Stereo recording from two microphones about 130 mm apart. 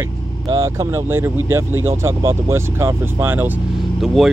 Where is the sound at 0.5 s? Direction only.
25° right (ahead or behind).